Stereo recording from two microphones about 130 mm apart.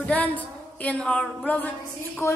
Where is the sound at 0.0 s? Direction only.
10° left (ahead or behind).